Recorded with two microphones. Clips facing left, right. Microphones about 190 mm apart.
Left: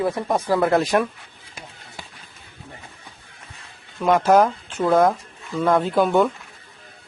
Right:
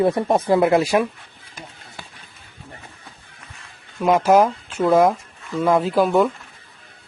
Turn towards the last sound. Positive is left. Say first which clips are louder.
# right 1 dB
turn(degrees=0)  # may be behind; listen again after turning